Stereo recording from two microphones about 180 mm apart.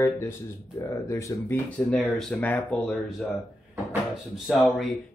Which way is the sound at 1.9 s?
5° left (ahead or behind).